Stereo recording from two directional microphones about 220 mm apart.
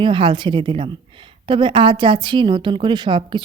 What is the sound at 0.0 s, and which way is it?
A woman's voice, 25° right (ahead or behind).